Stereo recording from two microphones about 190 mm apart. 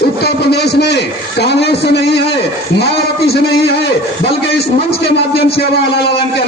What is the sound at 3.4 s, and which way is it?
Speech, 60° left (ahead or behind).